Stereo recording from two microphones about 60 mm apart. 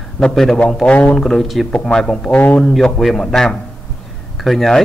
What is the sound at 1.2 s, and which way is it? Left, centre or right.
Speech, centre.